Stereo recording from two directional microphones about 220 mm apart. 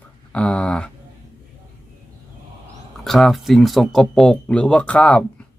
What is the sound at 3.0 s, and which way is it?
Speech, centre (ahead or behind).